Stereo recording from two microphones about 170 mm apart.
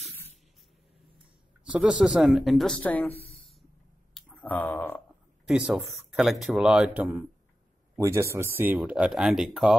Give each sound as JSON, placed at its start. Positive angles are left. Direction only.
{"t": 1.6, "sound": "speech", "side_deg": -5}
{"t": 3.1, "sound": "speech", "side_deg": 35}
{"t": 4.1, "sound": "a sound", "side_deg": 5}
{"t": 5.5, "sound": "speech", "side_deg": -5}